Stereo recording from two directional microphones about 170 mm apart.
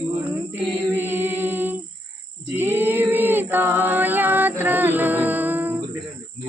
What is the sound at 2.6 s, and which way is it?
Singing, 10° right (ahead or behind).